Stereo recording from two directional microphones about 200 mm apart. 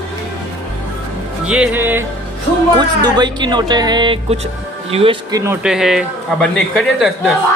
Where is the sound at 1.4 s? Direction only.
5° right (ahead or behind).